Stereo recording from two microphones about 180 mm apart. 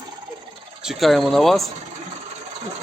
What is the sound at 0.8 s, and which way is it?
Speech, centre (ahead or behind).